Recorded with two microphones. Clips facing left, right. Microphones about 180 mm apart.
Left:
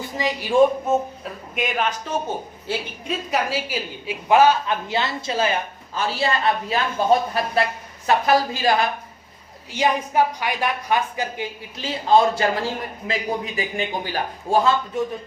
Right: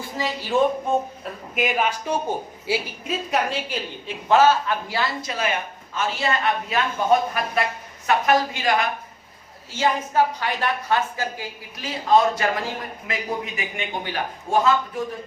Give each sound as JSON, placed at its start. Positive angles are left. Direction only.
{"t": 0.2, "sound": "a woman's voice", "side_deg": 15}
{"t": 1.2, "sound": "a woman's voice", "side_deg": -5}
{"t": 9.7, "sound": "a woman's voice", "side_deg": 15}
{"t": 11.8, "sound": "a man's voice", "side_deg": 30}